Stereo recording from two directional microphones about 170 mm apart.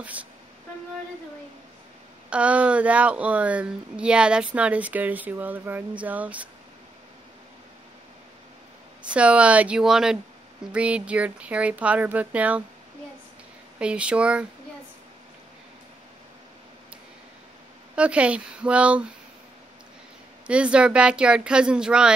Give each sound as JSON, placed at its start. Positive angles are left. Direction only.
{"t": 2.2, "sound": "speech", "side_deg": -5}
{"t": 9.1, "sound": "speech", "side_deg": -5}
{"t": 13.7, "sound": "speech", "side_deg": -5}
{"t": 17.9, "sound": "speech", "side_deg": -5}
{"t": 20.4, "sound": "speech", "side_deg": -5}